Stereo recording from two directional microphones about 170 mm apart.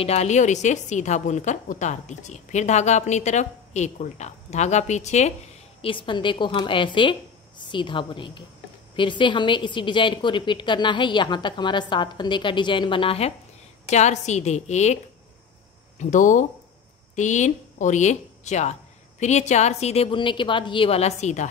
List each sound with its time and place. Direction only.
0.0 s a woman's voice: 40° left (ahead or behind)
5.8 s a woman's voice: 30° left (ahead or behind)
16.0 s a woman's voice: 45° left (ahead or behind)